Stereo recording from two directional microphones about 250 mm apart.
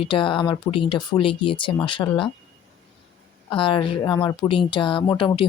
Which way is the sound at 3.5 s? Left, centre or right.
Left.